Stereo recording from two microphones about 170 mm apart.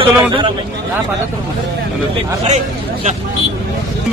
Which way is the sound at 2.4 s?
40° right (ahead or behind).